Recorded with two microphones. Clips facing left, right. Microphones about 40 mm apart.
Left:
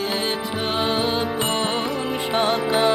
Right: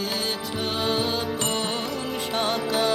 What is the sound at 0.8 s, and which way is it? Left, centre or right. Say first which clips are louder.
Music: left 2 dB; centre.